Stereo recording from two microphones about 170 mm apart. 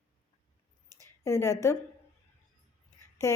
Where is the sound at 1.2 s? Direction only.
15° left (ahead or behind).